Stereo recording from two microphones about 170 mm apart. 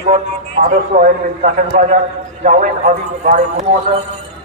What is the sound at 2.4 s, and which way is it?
Speech, 50° right (ahead or behind).